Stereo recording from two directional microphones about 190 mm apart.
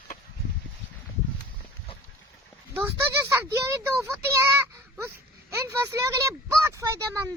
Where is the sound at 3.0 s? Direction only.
15° right (ahead or behind).